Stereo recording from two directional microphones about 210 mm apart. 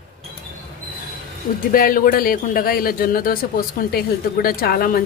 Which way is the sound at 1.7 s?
40° left (ahead or behind).